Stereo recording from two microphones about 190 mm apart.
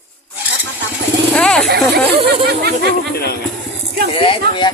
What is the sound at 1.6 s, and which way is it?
Speech, 60° right (ahead or behind).